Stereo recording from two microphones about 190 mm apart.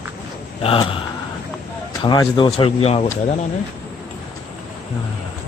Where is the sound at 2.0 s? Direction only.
25° left (ahead or behind).